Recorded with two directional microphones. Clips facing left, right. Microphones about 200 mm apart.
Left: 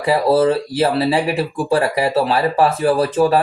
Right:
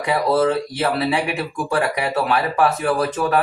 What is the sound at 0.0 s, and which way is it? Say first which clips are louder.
Speech: left 4 dB; 30° left (ahead or behind).